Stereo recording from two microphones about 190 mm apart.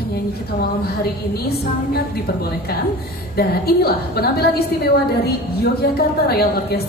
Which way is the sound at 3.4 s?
55° left (ahead or behind).